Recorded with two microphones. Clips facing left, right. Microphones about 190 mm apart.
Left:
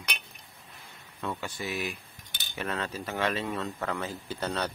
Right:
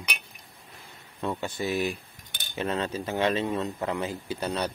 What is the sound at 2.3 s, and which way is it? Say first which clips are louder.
Cutlery: right 3 dB; 50° right (ahead or behind).